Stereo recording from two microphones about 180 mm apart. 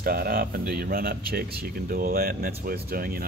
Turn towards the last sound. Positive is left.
turn(degrees=-55)  # may be behind; listen again after turning